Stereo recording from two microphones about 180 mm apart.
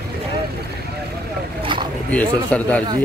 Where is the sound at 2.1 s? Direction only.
5° left (ahead or behind).